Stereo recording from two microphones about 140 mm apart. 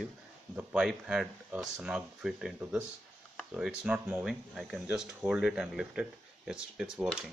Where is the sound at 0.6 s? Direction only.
5° right (ahead or behind).